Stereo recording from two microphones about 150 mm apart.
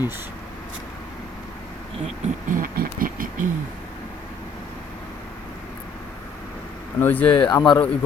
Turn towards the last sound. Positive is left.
turn(degrees=25)  # may be behind; listen again after turning